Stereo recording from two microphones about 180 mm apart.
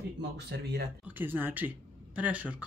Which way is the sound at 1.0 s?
10° right (ahead or behind).